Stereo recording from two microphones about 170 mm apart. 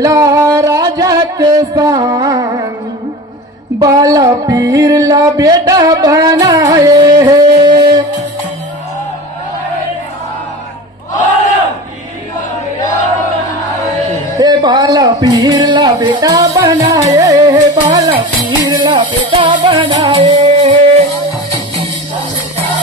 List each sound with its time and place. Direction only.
0.0 s music: 20° right (ahead or behind)
3.8 s music: 20° right (ahead or behind)
13.7 s music: 20° left (ahead or behind)
14.4 s speech: 25° right (ahead or behind)
18.6 s music: 25° right (ahead or behind)
20.4 s music: 40° right (ahead or behind)